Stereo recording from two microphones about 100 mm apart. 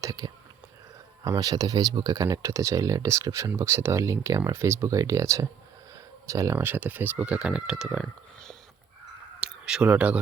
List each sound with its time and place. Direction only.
0.0 s speech: 35° right (ahead or behind)
6.6 s speech: 20° right (ahead or behind)
9.6 s speech: 10° right (ahead or behind)